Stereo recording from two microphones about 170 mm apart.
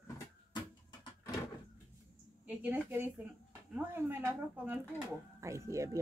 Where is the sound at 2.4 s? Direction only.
10° right (ahead or behind).